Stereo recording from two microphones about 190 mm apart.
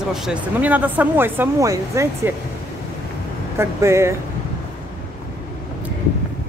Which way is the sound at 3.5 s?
15° right (ahead or behind).